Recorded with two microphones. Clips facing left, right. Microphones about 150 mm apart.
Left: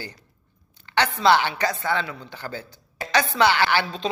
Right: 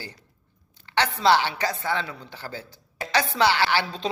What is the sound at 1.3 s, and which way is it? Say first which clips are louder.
Speech: left 1 dB; 60° left (ahead or behind).